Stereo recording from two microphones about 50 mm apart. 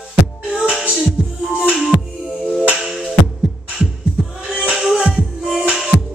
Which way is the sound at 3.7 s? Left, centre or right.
Centre.